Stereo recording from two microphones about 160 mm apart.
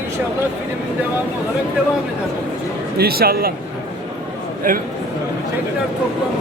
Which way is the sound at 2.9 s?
75° right (ahead or behind).